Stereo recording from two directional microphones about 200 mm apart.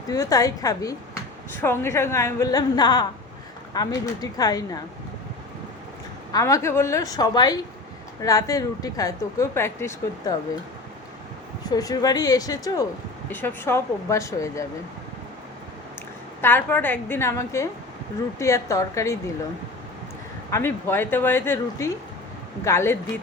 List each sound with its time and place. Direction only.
0.1 s speech: 15° left (ahead or behind)
6.3 s speech: 15° left (ahead or behind)
11.7 s speech: 20° left (ahead or behind)
16.4 s speech: 10° left (ahead or behind)
20.5 s speech: 10° left (ahead or behind)